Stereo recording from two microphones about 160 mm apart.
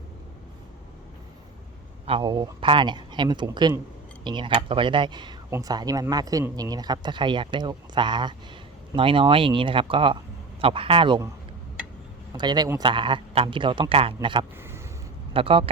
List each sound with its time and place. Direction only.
2.0 s a man's voice: 35° right (ahead or behind)
12.3 s a man's voice: 25° right (ahead or behind)